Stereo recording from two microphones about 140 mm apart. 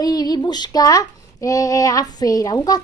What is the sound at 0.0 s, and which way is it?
Child singing, 25° left (ahead or behind).